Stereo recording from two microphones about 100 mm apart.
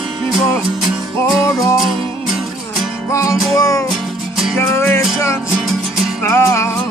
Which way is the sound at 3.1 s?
35° left (ahead or behind).